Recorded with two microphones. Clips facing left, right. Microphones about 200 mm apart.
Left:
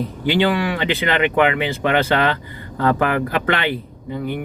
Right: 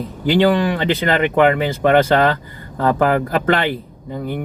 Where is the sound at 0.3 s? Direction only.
40° right (ahead or behind).